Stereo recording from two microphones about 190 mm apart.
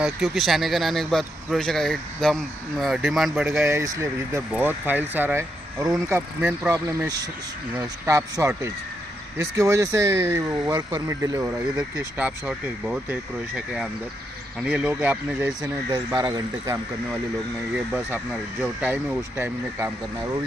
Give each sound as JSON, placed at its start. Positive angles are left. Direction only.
{"t": 0.0, "sound": "speech", "side_deg": 0}
{"t": 3.6, "sound": "speech", "side_deg": -15}
{"t": 15.9, "sound": "speech", "side_deg": -20}
{"t": 17.7, "sound": "speech", "side_deg": -10}